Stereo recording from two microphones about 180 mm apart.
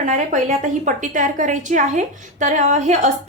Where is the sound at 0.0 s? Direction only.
45° right (ahead or behind).